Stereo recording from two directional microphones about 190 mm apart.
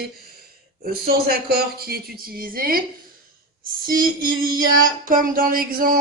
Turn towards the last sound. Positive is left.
turn(degrees=-50)  # may be behind; listen again after turning